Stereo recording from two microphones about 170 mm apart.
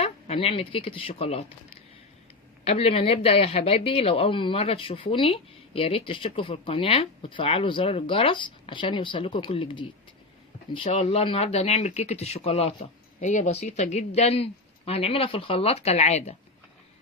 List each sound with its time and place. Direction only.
0.0 s a woman's voice: 35° left (ahead or behind)